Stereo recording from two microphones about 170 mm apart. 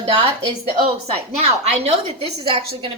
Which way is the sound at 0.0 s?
30° right (ahead or behind).